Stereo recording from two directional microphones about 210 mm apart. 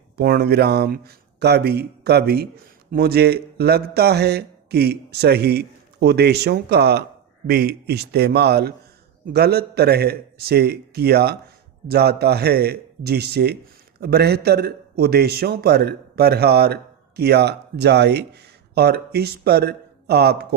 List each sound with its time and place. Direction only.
0.2 s a man's voice: 50° right (ahead or behind)